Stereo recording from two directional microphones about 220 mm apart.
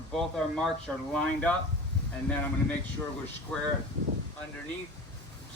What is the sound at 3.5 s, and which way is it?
Speech, 5° left (ahead or behind).